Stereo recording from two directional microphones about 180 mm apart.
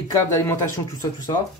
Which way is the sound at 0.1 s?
20° left (ahead or behind).